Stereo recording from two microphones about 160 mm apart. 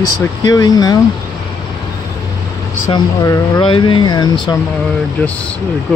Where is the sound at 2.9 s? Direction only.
25° left (ahead or behind).